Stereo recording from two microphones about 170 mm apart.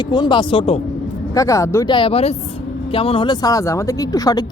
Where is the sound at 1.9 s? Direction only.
30° left (ahead or behind).